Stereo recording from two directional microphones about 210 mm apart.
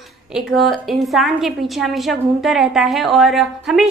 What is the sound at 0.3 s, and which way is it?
A woman's voice, centre (ahead or behind).